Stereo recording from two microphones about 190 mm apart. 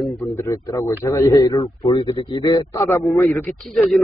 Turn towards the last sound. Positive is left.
turn(degrees=0)  # may be behind; listen again after turning